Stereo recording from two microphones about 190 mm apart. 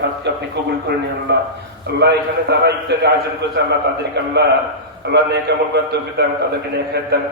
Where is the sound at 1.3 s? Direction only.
60° right (ahead or behind).